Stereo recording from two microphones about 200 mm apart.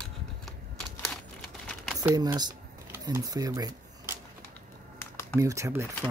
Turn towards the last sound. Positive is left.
turn(degrees=-15)  # may be behind; listen again after turning